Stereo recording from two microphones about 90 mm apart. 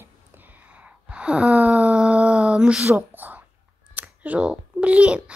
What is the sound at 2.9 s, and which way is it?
A woman's voice, 20° right (ahead or behind).